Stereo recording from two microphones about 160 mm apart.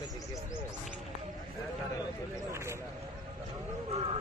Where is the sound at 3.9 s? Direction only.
40° right (ahead or behind).